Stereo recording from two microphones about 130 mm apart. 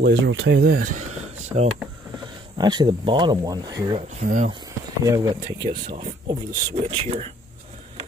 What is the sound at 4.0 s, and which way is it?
Speech, 70° right (ahead or behind).